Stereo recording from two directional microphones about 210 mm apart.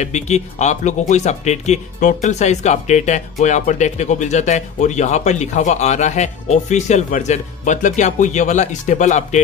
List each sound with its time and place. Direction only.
0.0 s speech: 30° left (ahead or behind)